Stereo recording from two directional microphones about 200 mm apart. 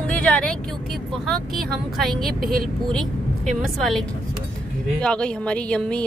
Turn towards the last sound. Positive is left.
turn(degrees=5)  # may be behind; listen again after turning